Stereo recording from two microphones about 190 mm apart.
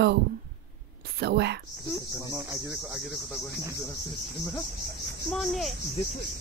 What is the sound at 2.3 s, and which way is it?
Cricket, 15° right (ahead or behind).